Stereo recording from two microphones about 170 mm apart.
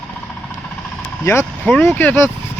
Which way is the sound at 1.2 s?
15° left (ahead or behind).